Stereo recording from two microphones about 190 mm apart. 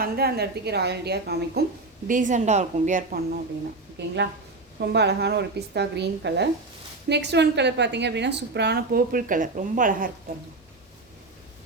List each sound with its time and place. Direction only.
0.0 s a woman's voice: 55° right (ahead or behind)
2.0 s a woman's voice: 45° right (ahead or behind)
4.8 s a woman's voice: 60° right (ahead or behind)